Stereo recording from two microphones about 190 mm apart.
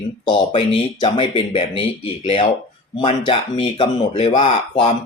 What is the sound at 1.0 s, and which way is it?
Speech, 30° left (ahead or behind).